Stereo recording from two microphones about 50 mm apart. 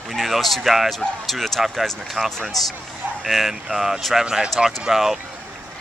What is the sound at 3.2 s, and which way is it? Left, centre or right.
Speech, centre.